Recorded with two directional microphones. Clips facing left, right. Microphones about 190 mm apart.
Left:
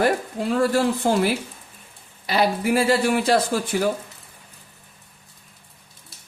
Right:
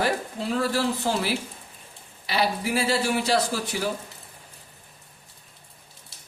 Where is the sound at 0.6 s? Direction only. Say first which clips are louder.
Left 6 dB; 50° left (ahead or behind).